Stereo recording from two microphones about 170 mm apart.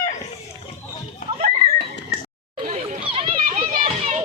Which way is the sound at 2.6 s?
45° right (ahead or behind).